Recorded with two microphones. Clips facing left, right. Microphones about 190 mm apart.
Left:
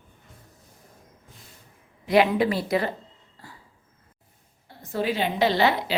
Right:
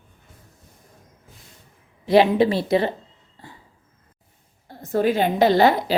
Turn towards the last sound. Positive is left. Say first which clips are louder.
# right 5 dB
turn(degrees=-45)  # may be behind; listen again after turning